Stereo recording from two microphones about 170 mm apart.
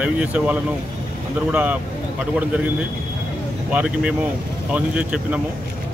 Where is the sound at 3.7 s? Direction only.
5° right (ahead or behind).